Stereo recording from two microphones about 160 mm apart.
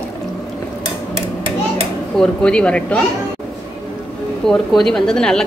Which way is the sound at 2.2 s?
5° left (ahead or behind).